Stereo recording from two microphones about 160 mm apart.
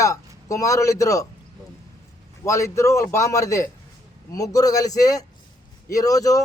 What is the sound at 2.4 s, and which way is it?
A man's voice, 20° left (ahead or behind).